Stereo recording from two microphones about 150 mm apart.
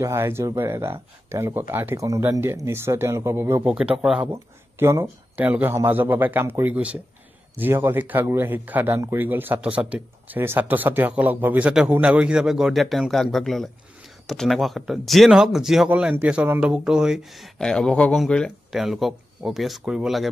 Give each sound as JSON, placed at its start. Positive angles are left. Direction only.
{"t": 0.0, "sound": "speech", "side_deg": -20}
{"t": 3.7, "sound": "speech", "side_deg": -5}
{"t": 4.3, "sound": "speech", "side_deg": -20}